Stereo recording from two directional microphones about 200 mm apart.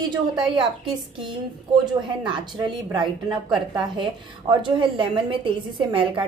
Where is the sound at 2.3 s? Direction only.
25° right (ahead or behind).